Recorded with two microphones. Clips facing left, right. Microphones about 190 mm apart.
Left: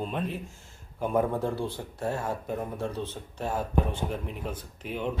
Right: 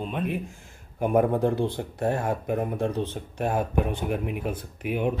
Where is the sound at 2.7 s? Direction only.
15° right (ahead or behind).